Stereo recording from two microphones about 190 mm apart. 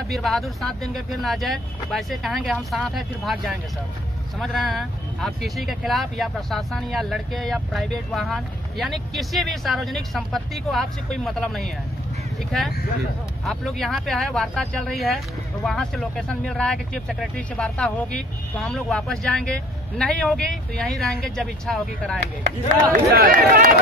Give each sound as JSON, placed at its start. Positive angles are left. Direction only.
{"t": 0.1, "sound": "speech", "side_deg": 0}
{"t": 13.5, "sound": "speech", "side_deg": 0}
{"t": 22.9, "sound": "speech", "side_deg": -45}